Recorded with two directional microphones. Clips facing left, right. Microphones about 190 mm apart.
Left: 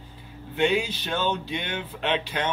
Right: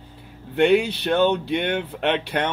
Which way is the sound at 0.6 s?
65° right (ahead or behind).